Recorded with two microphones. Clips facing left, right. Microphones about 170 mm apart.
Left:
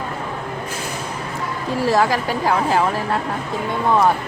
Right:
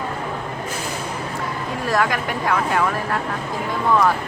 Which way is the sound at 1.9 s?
30° left (ahead or behind).